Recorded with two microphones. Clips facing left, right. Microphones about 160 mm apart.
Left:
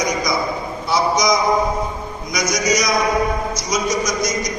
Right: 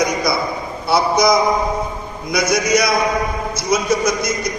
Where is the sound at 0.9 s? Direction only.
60° right (ahead or behind).